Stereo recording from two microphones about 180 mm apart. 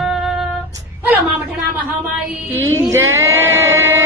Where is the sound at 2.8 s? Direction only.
15° right (ahead or behind).